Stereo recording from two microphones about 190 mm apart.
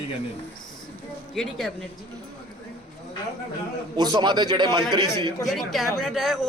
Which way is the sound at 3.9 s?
20° right (ahead or behind).